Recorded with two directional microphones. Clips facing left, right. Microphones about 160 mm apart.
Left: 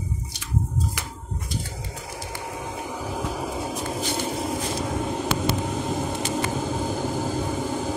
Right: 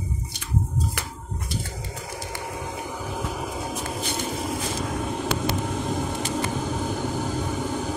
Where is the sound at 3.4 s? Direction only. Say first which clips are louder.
Left 2 dB; 25° left (ahead or behind).